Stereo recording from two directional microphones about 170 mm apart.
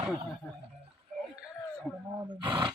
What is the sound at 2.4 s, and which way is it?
Speech, 25° right (ahead or behind).